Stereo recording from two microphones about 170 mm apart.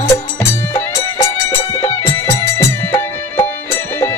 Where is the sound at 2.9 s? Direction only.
15° left (ahead or behind).